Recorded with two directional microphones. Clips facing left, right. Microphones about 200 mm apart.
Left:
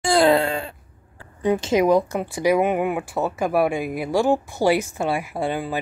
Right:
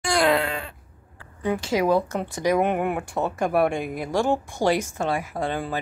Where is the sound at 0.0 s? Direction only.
30° left (ahead or behind).